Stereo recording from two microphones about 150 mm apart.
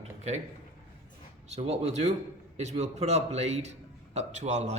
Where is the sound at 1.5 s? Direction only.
45° right (ahead or behind).